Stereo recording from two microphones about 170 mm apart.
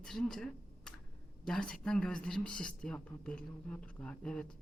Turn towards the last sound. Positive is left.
turn(degrees=5)  # may be behind; listen again after turning